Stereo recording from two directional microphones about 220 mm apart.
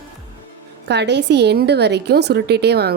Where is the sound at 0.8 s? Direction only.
50° right (ahead or behind).